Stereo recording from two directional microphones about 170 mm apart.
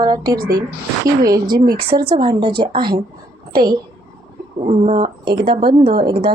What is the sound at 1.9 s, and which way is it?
A woman's voice, 30° right (ahead or behind).